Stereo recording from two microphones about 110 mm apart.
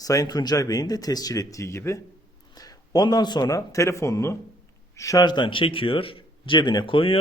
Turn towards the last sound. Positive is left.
turn(degrees=50)  # may be behind; listen again after turning